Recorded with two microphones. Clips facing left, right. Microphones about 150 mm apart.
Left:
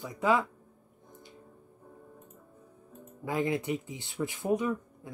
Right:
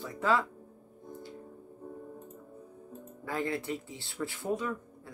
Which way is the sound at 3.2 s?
15° left (ahead or behind).